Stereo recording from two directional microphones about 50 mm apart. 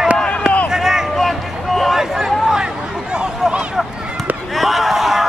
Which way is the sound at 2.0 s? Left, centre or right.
Centre.